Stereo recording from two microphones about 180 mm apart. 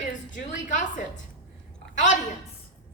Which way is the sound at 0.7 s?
45° left (ahead or behind).